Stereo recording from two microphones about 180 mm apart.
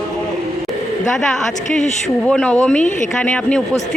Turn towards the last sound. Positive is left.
turn(degrees=5)  # may be behind; listen again after turning